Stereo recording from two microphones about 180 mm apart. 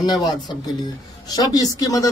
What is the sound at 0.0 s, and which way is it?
Speech, 20° left (ahead or behind).